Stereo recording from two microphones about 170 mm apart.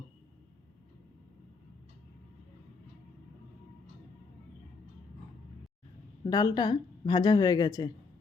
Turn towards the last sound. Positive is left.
turn(degrees=25)  # may be behind; listen again after turning